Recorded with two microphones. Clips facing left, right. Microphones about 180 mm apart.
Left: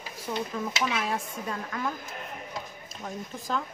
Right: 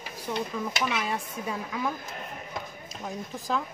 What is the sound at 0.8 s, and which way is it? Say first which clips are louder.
A woman's voice: even; centre (ahead or behind).